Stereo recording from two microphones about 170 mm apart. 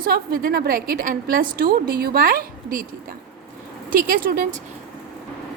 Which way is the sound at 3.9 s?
55° right (ahead or behind).